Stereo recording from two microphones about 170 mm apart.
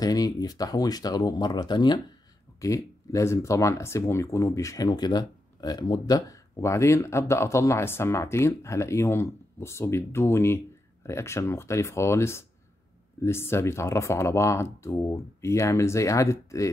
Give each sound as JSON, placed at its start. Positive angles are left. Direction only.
{"t": 0.0, "sound": "speech", "side_deg": 20}